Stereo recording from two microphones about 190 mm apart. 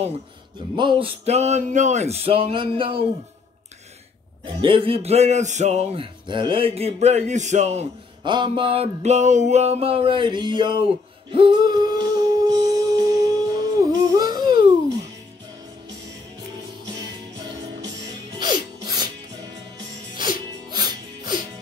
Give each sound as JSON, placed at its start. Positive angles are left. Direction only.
{"t": 0.7, "sound": "speech", "side_deg": -25}
{"t": 4.6, "sound": "speech", "side_deg": -25}
{"t": 11.3, "sound": "music", "side_deg": -25}
{"t": 18.4, "sound": "music", "side_deg": -20}
{"t": 20.7, "sound": "music", "side_deg": -20}